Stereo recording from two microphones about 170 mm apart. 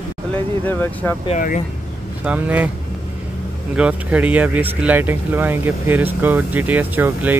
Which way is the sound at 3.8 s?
10° right (ahead or behind).